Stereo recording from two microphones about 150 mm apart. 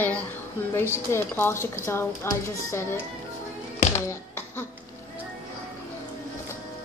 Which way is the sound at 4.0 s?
15° left (ahead or behind).